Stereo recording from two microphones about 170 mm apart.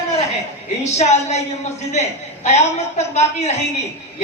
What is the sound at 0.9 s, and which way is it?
A woman's voice, 40° left (ahead or behind).